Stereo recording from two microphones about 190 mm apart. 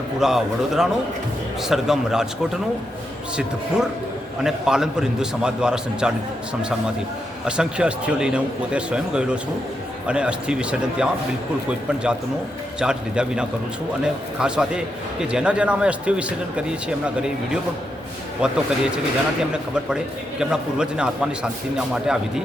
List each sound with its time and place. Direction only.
0.2 s a man's voice: centre (ahead or behind)
4.4 s a man's voice: 5° right (ahead or behind)
7.4 s a man's voice: 5° right (ahead or behind)
12.8 s a man's voice: 5° right (ahead or behind)